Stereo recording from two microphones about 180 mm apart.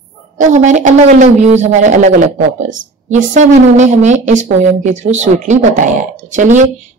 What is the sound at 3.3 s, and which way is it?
Speech, 40° right (ahead or behind).